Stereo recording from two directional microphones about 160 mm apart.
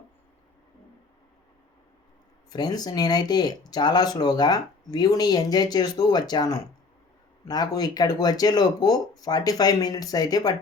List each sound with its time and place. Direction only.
2.5 s speech: 25° left (ahead or behind)